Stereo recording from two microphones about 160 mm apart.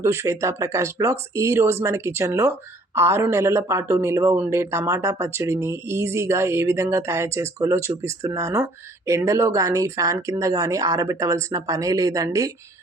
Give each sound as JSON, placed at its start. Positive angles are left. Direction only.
{"t": 0.0, "sound": "speech", "side_deg": -20}